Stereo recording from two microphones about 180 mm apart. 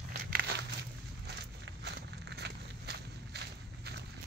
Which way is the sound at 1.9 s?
65° right (ahead or behind).